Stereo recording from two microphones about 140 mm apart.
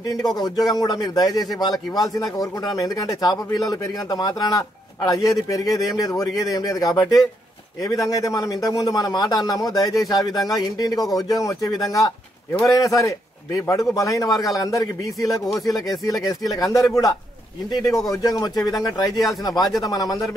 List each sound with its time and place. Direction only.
0.0 s a man's voice: 25° left (ahead or behind)